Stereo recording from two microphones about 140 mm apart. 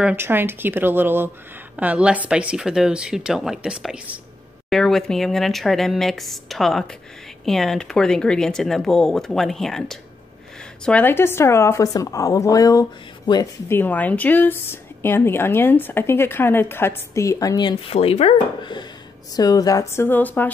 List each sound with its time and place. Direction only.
0.0 s a woman's voice: 15° right (ahead or behind); by 12.8 s 25° left (ahead or behind)
13.3 s a sound: 35° left (ahead or behind)
13.7 s a woman's voice: 15° left (ahead or behind); by 17.9 s 30° left (ahead or behind)
17.9 s speech: 50° left (ahead or behind)
18.6 s a sound: 35° left (ahead or behind)
19.3 s a woman's voice: 25° left (ahead or behind)